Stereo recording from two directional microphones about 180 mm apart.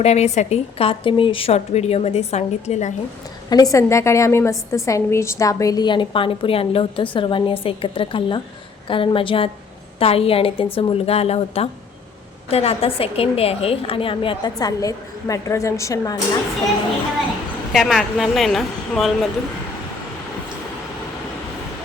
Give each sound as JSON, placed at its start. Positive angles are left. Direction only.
{"t": 0.0, "sound": "a woman's voice", "side_deg": 35}
{"t": 3.5, "sound": "a woman's voice", "side_deg": 20}
{"t": 17.7, "sound": "speech", "side_deg": 0}